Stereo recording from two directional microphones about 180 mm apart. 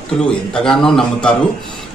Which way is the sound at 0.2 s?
5° left (ahead or behind).